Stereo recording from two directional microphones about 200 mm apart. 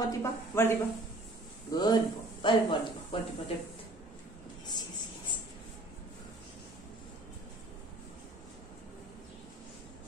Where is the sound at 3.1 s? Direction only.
25° left (ahead or behind).